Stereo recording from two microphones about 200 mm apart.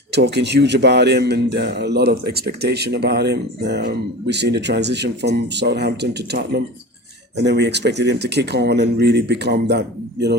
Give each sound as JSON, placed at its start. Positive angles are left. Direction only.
{"t": 0.1, "sound": "a man's voice", "side_deg": -60}